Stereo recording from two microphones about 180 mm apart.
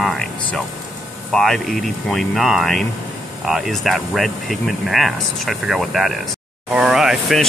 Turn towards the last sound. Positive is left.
turn(degrees=0)  # may be behind; listen again after turning